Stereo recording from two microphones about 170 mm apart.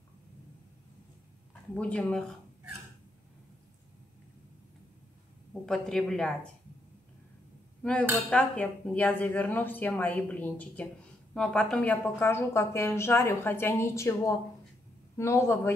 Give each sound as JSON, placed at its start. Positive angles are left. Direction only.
{"t": 1.5, "sound": "speech", "side_deg": 5}
{"t": 5.5, "sound": "a woman's voice", "side_deg": 0}
{"t": 7.8, "sound": "speech", "side_deg": 5}